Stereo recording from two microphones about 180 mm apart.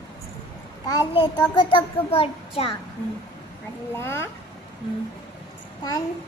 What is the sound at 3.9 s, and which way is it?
Speech, 15° left (ahead or behind).